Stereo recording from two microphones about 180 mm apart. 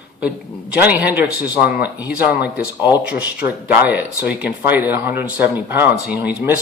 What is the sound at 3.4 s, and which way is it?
Speech, 10° right (ahead or behind).